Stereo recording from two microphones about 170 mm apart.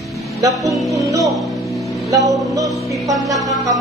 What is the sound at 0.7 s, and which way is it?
Music, centre (ahead or behind).